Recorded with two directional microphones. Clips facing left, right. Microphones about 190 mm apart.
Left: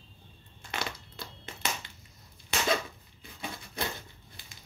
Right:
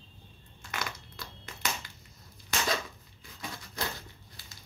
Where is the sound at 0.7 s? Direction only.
30° left (ahead or behind).